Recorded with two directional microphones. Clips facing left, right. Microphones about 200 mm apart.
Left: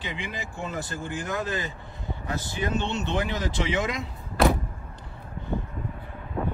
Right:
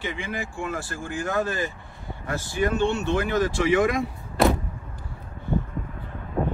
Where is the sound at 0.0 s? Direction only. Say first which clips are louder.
Right 4 dB; 20° left (ahead or behind).